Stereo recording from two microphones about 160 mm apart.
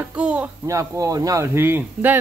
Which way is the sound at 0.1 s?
5° right (ahead or behind).